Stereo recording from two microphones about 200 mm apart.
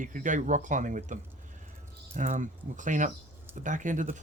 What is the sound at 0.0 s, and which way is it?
Speech, 40° right (ahead or behind).